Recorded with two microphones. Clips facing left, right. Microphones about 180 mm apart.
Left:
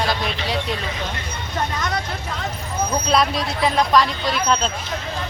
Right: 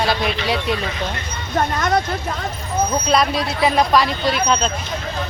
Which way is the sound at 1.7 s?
50° right (ahead or behind).